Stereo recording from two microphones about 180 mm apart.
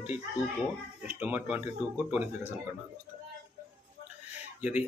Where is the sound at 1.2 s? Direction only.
10° right (ahead or behind).